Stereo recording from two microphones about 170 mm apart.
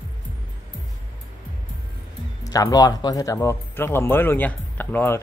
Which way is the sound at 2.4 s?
20° left (ahead or behind).